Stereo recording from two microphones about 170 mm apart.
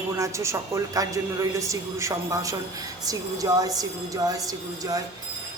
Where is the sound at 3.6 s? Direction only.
20° right (ahead or behind).